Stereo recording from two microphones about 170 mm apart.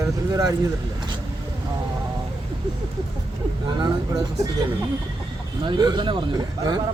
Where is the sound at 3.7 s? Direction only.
25° right (ahead or behind).